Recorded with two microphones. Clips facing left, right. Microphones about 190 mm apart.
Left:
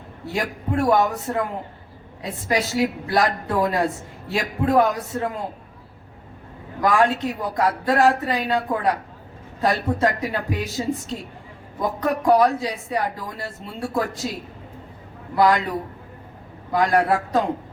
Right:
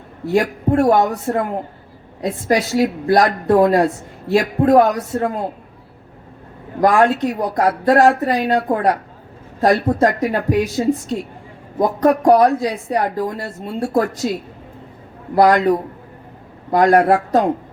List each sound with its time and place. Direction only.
0.3 s speech: 45° right (ahead or behind)
6.8 s speech: 45° right (ahead or behind)
15.4 s speech: 45° right (ahead or behind)